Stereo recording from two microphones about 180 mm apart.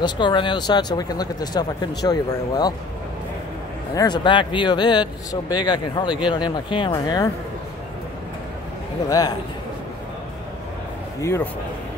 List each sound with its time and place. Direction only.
0.0 s speech: 25° left (ahead or behind)
3.9 s speech: 20° left (ahead or behind)
11.1 s a man's voice: 15° left (ahead or behind)